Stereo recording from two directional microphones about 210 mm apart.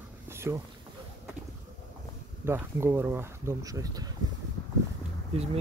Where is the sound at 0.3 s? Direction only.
10° right (ahead or behind).